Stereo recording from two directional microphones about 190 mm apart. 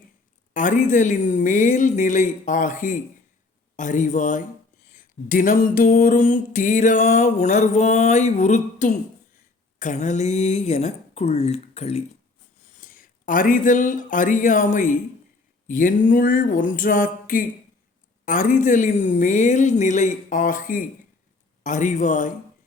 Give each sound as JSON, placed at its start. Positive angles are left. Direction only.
{"t": 0.5, "sound": "a woman's voice", "side_deg": 45}
{"t": 3.8, "sound": "music", "side_deg": 40}
{"t": 12.7, "sound": "a woman's voice", "side_deg": 45}
{"t": 18.3, "sound": "music", "side_deg": 45}